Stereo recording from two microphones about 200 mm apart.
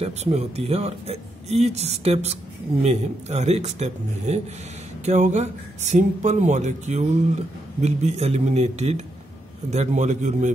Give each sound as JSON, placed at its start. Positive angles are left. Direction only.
{"t": 0.0, "sound": "speech", "side_deg": -30}